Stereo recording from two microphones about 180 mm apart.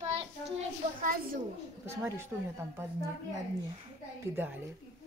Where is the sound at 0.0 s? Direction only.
35° right (ahead or behind).